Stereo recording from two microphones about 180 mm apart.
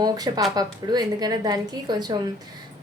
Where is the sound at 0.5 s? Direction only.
20° right (ahead or behind).